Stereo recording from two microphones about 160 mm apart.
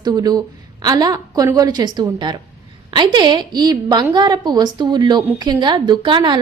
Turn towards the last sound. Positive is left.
turn(degrees=-30)  # may be behind; listen again after turning